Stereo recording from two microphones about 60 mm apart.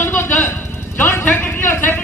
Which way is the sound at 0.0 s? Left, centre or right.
Left.